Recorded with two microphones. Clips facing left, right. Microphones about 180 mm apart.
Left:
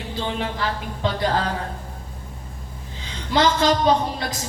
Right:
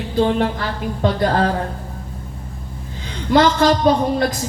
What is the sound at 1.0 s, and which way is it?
Speech, 55° right (ahead or behind).